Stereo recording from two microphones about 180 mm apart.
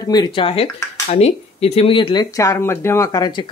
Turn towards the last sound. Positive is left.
turn(degrees=20)  # may be behind; listen again after turning